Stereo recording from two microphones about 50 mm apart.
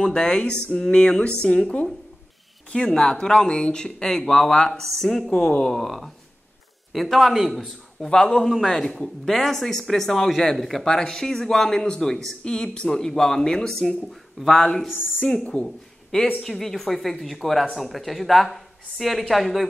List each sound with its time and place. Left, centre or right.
0.0 s a man's voice: centre
8.1 s speech: centre
8.5 s speech: centre
8.8 s speech: centre
15.5 s speech: left
16.4 s speech: centre